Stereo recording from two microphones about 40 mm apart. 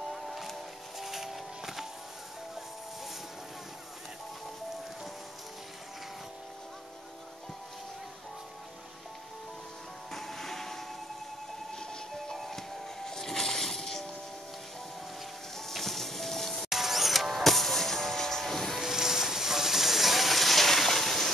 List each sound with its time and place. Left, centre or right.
0.1 s music: centre
10.1 s a sound: centre
11.8 s train: centre
12.4 s music: centre
15.5 s music: centre
16.6 s music: centre
18.8 s a sound: centre